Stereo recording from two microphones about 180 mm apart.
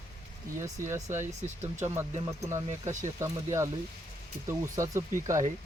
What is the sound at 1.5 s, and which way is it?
Speech, 40° right (ahead or behind).